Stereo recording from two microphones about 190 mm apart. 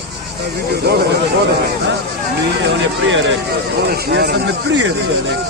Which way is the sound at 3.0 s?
80° right.